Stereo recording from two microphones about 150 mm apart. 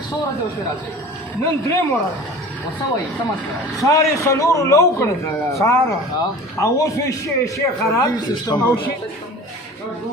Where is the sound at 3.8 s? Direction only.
20° left (ahead or behind).